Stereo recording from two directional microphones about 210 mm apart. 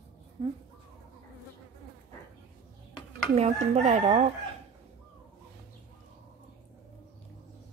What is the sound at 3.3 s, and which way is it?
Chicken, 30° right (ahead or behind).